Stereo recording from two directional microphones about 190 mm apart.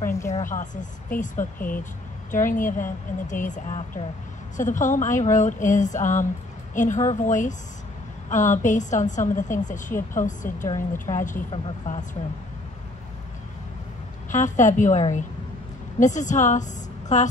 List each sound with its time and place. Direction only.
0.0 s a woman's voice: 15° left (ahead or behind)
0.3 s a woman's voice: 40° left (ahead or behind)
14.3 s a woman's voice: 40° left (ahead or behind)